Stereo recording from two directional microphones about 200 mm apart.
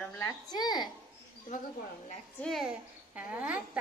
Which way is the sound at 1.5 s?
40° left (ahead or behind).